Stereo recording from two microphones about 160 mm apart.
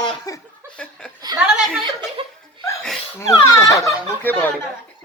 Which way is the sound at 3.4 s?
20° left (ahead or behind).